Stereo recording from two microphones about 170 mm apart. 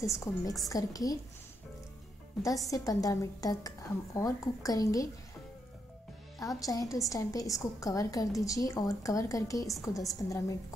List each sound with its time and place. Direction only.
0.0 s a woman's voice: 20° left (ahead or behind)
2.4 s a woman's voice: 20° left (ahead or behind)
6.4 s a woman's voice: 20° left (ahead or behind)